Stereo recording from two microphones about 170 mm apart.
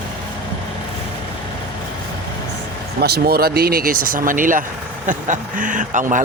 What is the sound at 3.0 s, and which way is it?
Speech, 65° right (ahead or behind).